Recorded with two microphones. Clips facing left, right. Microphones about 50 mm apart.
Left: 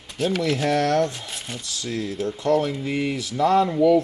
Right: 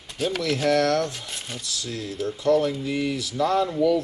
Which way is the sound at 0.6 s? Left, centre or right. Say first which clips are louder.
Right 1 dB; left.